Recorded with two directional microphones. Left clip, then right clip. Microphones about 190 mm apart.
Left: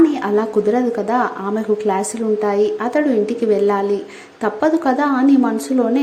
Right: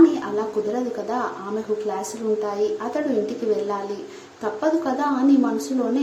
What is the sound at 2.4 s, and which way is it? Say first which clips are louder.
Speech: left 7 dB; 25° left (ahead or behind).